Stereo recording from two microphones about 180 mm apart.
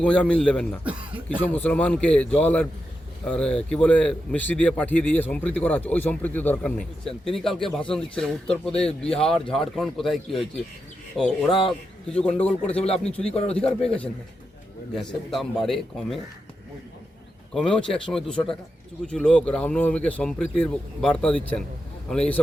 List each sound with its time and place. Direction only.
0.0 s speech: 5° left (ahead or behind)
0.9 s speech: 10° right (ahead or behind)
1.4 s speech: 10° left (ahead or behind)
12.8 s speech: 35° left (ahead or behind)
13.6 s speech: 5° left (ahead or behind)
17.5 s speech: 5° left (ahead or behind)